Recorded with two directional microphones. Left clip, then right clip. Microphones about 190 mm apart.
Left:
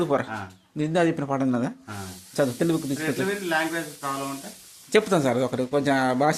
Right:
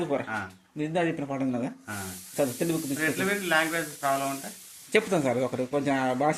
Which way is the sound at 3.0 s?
30° right (ahead or behind).